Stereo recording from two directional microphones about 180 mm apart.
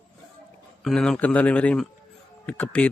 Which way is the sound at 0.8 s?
5° left (ahead or behind).